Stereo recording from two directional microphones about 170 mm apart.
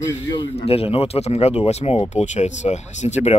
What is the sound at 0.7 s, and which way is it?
Speech, 35° left (ahead or behind).